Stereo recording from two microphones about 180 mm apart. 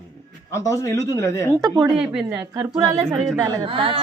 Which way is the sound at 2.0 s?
5° right (ahead or behind).